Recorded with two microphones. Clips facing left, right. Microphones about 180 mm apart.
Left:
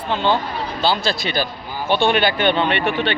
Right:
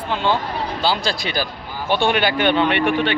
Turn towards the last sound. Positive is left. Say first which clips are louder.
# right 2 dB
turn(degrees=-10)  # may be behind; listen again after turning